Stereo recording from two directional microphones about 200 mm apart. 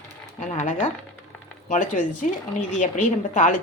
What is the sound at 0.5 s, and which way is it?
A woman's voice, 35° left (ahead or behind).